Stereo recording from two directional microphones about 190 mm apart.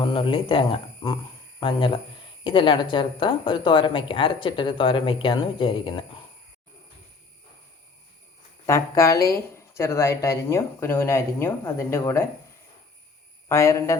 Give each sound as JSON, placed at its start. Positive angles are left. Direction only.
{"t": 0.0, "sound": "speech", "side_deg": 25}
{"t": 8.6, "sound": "speech", "side_deg": 15}
{"t": 13.5, "sound": "speech", "side_deg": 15}